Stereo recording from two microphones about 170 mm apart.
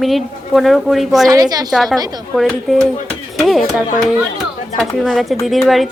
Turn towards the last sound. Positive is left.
turn(degrees=0)  # may be behind; listen again after turning